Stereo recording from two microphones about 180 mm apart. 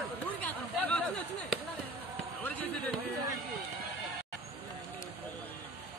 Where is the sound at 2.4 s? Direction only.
10° left (ahead or behind).